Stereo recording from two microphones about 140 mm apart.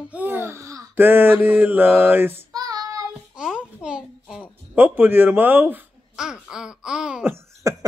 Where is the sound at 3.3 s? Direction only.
5° right (ahead or behind).